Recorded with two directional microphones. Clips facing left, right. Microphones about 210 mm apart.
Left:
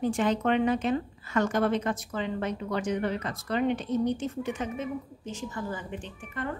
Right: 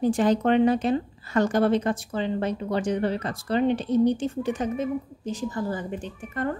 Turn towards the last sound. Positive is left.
turn(degrees=-40)  # may be behind; listen again after turning